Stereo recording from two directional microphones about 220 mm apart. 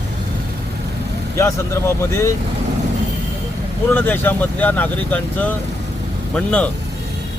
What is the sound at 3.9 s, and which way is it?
Speech, 10° left (ahead or behind).